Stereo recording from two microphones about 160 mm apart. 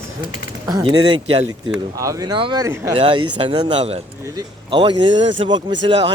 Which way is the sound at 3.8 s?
40° right (ahead or behind).